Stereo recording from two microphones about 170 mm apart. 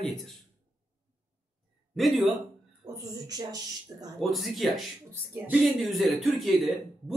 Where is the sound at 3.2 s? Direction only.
20° right (ahead or behind).